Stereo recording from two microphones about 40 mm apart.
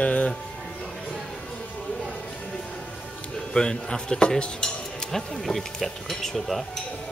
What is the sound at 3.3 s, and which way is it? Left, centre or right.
Speech, centre.